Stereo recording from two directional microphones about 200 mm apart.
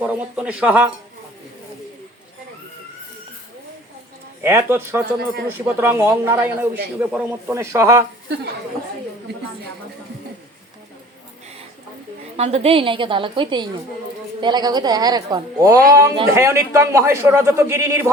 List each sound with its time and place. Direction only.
0.0 s a man's voice: 5° right (ahead or behind)
4.4 s a man's voice: 10° right (ahead or behind)
12.4 s a woman's voice: 30° right (ahead or behind); by 18.1 s 15° right (ahead or behind)